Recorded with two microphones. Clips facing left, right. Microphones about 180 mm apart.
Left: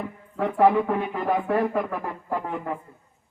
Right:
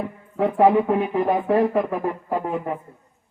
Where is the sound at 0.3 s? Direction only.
15° right (ahead or behind).